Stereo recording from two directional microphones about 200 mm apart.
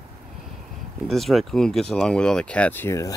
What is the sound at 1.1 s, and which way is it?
Speech, centre (ahead or behind).